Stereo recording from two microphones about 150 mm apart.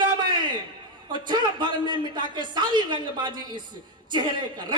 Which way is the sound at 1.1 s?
30° right (ahead or behind).